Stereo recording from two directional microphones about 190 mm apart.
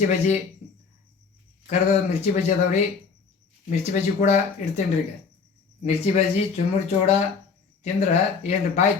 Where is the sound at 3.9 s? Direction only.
40° left (ahead or behind).